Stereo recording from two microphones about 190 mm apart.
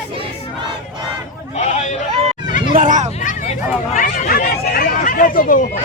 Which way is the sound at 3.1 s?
40° left (ahead or behind).